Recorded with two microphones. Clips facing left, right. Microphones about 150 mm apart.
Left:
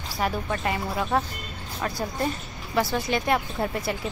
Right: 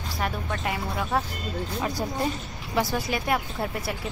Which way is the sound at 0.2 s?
Centre (ahead or behind).